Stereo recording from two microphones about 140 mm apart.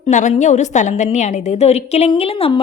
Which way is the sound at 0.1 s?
60° left (ahead or behind).